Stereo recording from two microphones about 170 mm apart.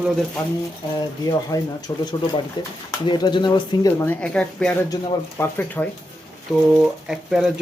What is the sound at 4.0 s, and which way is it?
Speech, 10° left (ahead or behind).